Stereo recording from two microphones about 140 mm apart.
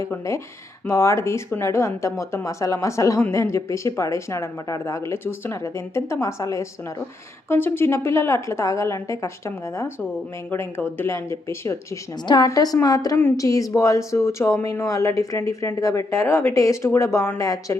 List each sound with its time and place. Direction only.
0.1 s speech: 20° left (ahead or behind)